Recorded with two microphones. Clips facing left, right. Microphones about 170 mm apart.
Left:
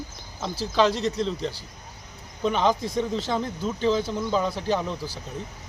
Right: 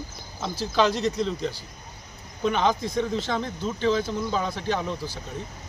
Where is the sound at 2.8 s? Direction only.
35° left (ahead or behind).